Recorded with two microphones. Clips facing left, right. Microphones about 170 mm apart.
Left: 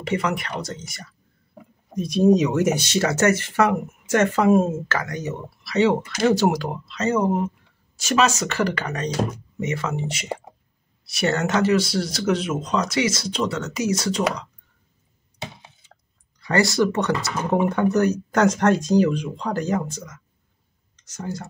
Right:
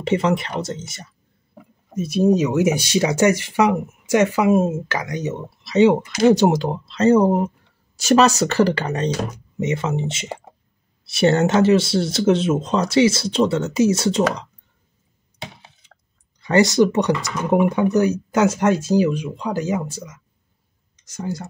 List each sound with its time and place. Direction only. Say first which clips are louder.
0.0 s speech: right 5 dB; 25° right (ahead or behind)
2.0 s speech: even; 5° right (ahead or behind); by 14.2 s 25° right (ahead or behind)
16.3 s speech: right 5 dB; 20° right (ahead or behind)